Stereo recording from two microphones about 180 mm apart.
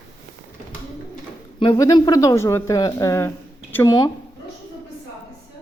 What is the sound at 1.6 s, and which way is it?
Speech, 25° left (ahead or behind).